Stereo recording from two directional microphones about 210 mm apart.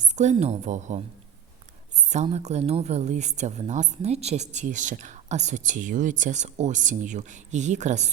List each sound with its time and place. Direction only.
0.0 s speech: 35° right (ahead or behind)